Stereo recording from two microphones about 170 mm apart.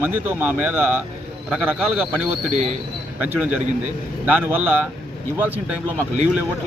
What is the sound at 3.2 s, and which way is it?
A man's voice, 10° right (ahead or behind).